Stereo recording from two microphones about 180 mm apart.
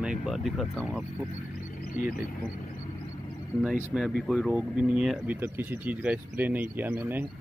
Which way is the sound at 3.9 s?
Centre (ahead or behind).